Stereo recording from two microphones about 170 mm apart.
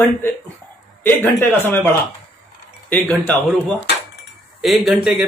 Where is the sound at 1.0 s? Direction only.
10° left (ahead or behind).